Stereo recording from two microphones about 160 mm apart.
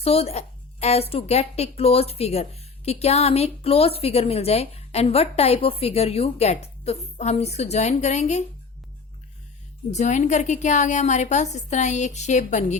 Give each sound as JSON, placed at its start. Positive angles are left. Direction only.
{"t": 0.0, "sound": "a woman's voice", "side_deg": 40}
{"t": 9.9, "sound": "a woman's voice", "side_deg": 45}